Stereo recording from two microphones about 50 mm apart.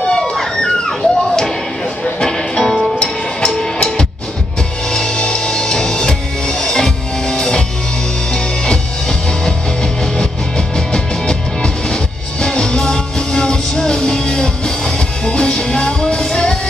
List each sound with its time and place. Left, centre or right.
0.0 s a sound: centre
2.1 s music: centre
10.9 s music: centre